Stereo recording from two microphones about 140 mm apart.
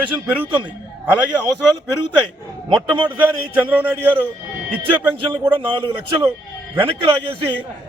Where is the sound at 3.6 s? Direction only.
15° right (ahead or behind).